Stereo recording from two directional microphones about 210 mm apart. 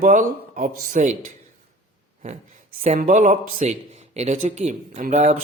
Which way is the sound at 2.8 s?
35° right (ahead or behind).